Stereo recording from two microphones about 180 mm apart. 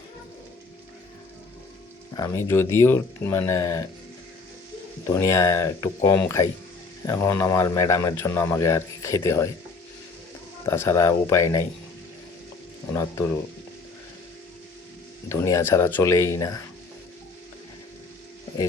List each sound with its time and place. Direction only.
2.1 s a man's voice: 20° left (ahead or behind)
5.0 s a man's voice: 15° left (ahead or behind)
10.7 s a man's voice: 15° left (ahead or behind)
12.9 s a man's voice: 15° left (ahead or behind)
15.3 s a man's voice: 15° left (ahead or behind)